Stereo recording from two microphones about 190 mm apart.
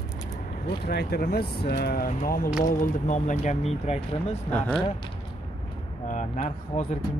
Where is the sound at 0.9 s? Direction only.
55° left (ahead or behind); by 4.0 s 35° left (ahead or behind).